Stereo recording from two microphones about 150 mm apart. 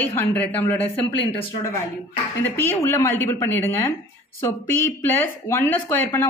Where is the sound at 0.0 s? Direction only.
10° left (ahead or behind).